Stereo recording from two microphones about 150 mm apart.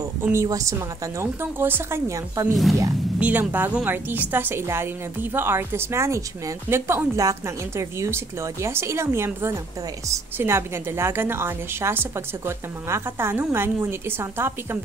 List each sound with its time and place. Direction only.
0.2 s a woman's voice: 20° right (ahead or behind)
2.5 s speech: centre (ahead or behind)
3.2 s a woman's voice: 10° right (ahead or behind)